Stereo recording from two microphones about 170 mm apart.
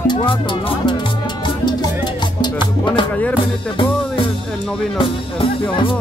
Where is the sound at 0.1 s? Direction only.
30° left (ahead or behind).